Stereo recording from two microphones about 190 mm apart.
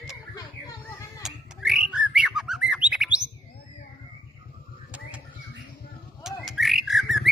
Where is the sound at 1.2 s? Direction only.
5° right (ahead or behind).